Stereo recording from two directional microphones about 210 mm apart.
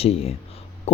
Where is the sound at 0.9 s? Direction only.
30° left (ahead or behind).